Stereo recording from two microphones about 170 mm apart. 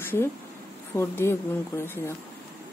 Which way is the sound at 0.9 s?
15° left (ahead or behind).